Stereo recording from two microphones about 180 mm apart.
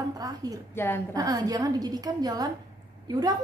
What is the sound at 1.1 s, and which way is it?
A woman's voice, 20° right (ahead or behind).